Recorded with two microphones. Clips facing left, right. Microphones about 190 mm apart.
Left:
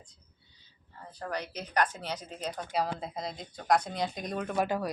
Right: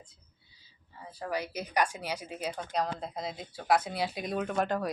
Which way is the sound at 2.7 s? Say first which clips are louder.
Left 2 dB; 5° left (ahead or behind).